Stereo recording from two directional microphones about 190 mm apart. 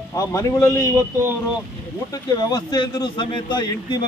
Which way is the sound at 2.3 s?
20° left (ahead or behind).